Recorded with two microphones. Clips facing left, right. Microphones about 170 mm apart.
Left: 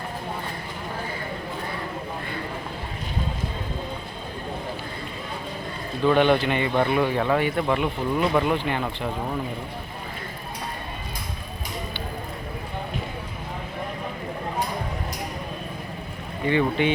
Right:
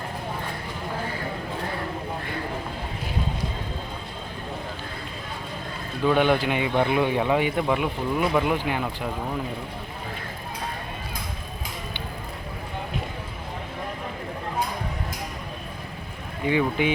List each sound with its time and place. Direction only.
6.1 s speech: 10° right (ahead or behind)
16.5 s speech: 10° right (ahead or behind)